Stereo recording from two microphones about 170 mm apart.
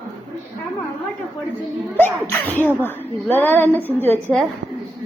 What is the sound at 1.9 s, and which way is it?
Speech, 10° left (ahead or behind).